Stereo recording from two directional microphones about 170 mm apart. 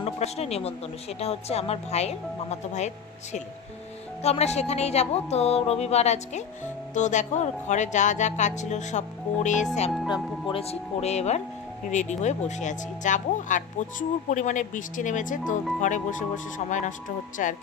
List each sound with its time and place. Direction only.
0.0 s a woman's voice: 35° left (ahead or behind)
4.2 s speech: 40° left (ahead or behind)
10.0 s a woman's voice: 30° left (ahead or behind); by 17.5 s 50° left (ahead or behind)